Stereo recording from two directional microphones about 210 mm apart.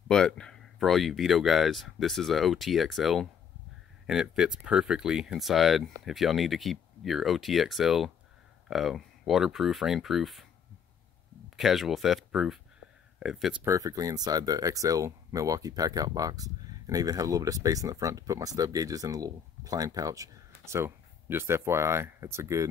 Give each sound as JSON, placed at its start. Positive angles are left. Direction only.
{"t": 0.1, "sound": "speech", "side_deg": 5}
{"t": 11.5, "sound": "speech", "side_deg": 0}
{"t": 13.7, "sound": "speech", "side_deg": -15}